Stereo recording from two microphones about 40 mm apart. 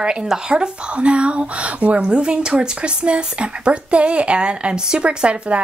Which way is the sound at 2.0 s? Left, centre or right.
Right.